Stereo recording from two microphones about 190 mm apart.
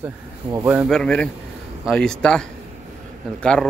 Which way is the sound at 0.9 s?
5° left (ahead or behind).